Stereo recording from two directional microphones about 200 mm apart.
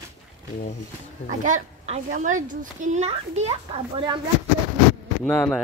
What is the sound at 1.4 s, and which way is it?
A child's voice, 40° right (ahead or behind).